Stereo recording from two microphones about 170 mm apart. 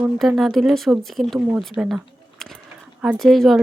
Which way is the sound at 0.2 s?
Centre (ahead or behind).